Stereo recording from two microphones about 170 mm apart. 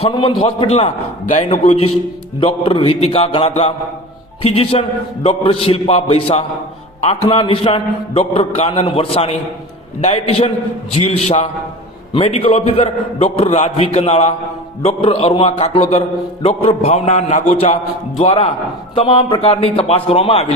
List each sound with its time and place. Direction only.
0.0 s a man's voice: 30° left (ahead or behind)